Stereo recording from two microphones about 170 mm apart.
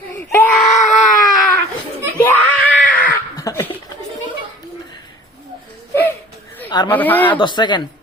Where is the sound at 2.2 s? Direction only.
10° left (ahead or behind).